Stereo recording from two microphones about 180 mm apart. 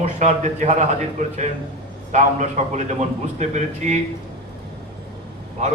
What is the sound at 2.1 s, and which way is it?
A man's voice, 40° right (ahead or behind).